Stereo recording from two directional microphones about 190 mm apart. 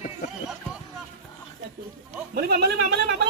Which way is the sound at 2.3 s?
55° right (ahead or behind).